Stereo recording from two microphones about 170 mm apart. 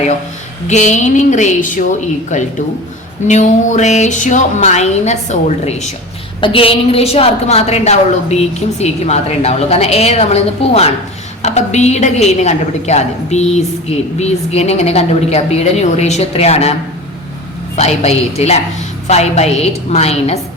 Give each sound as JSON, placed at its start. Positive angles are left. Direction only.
{"t": 0.7, "sound": "speech", "side_deg": 45}
{"t": 6.4, "sound": "a woman's voice", "side_deg": 30}
{"t": 17.7, "sound": "a woman's voice", "side_deg": 40}